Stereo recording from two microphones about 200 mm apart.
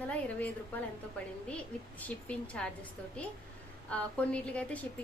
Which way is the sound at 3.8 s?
5° left (ahead or behind).